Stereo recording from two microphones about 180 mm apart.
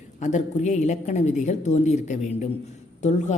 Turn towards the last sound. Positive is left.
turn(degrees=40)  # may be behind; listen again after turning